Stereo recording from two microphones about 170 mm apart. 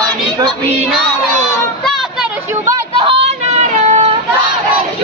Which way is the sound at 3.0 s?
35° right (ahead or behind).